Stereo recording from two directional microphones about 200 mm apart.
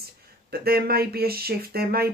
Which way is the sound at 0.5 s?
50° right (ahead or behind).